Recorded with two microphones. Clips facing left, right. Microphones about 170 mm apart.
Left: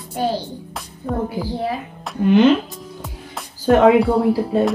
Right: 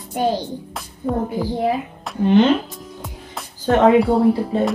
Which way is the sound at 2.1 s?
Centre (ahead or behind).